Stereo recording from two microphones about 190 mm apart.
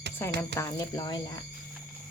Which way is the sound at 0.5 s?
15° left (ahead or behind).